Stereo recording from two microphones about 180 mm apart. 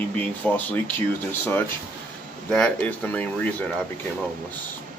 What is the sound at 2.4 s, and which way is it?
Speech, 5° left (ahead or behind).